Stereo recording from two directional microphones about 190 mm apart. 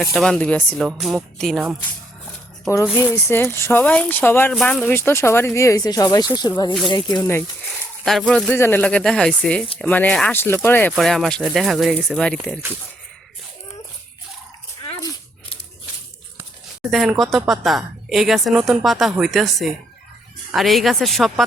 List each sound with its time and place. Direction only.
0.0 s speech: centre (ahead or behind)
2.7 s speech: 15° left (ahead or behind)
7.6 s speech: centre (ahead or behind)
16.9 s speech: centre (ahead or behind)